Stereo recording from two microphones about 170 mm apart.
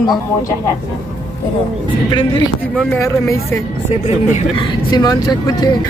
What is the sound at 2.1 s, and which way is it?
Speech, 25° left (ahead or behind).